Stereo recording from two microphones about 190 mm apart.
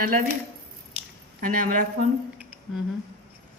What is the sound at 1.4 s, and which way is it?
Speech, 45° right (ahead or behind).